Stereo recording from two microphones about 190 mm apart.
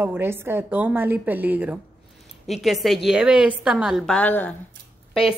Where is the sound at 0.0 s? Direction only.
10° right (ahead or behind); by 4.6 s 10° left (ahead or behind).